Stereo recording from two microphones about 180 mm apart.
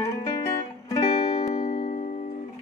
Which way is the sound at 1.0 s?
30° left (ahead or behind).